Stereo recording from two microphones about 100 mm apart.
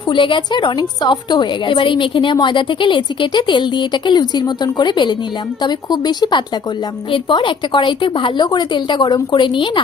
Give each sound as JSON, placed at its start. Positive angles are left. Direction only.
{"t": 0.1, "sound": "a woman's voice", "side_deg": 55}
{"t": 7.1, "sound": "a woman's voice", "side_deg": 55}